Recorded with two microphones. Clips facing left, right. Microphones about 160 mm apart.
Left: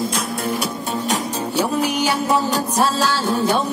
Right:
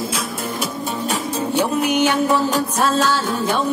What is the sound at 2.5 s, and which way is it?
Music, 35° left (ahead or behind).